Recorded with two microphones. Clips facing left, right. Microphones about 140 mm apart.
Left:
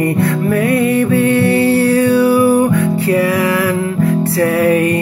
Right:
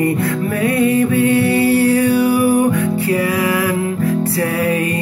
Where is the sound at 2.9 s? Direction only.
30° left (ahead or behind).